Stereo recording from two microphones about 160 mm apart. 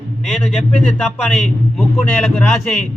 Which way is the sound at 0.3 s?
5° left (ahead or behind).